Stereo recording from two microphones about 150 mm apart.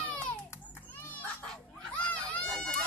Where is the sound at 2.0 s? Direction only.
10° left (ahead or behind).